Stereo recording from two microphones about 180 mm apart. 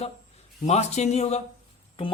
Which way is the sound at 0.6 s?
40° left (ahead or behind).